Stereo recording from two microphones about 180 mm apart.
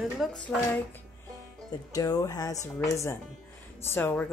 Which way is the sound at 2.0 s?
20° left (ahead or behind).